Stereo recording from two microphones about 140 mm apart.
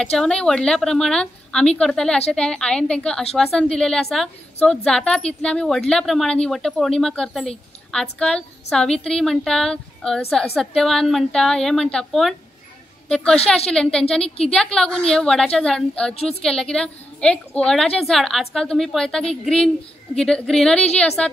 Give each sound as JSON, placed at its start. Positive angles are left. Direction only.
{"t": 0.0, "sound": "a woman's voice", "side_deg": 5}
{"t": 16.2, "sound": "a woman's voice", "side_deg": 45}
{"t": 16.4, "sound": "a woman's voice", "side_deg": 5}